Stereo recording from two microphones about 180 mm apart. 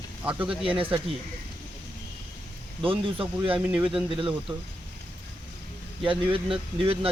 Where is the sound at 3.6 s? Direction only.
10° right (ahead or behind).